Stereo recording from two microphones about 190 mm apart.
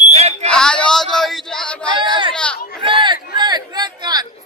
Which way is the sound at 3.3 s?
20° right (ahead or behind).